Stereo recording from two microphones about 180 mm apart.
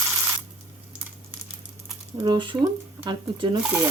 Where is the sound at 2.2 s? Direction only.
25° right (ahead or behind).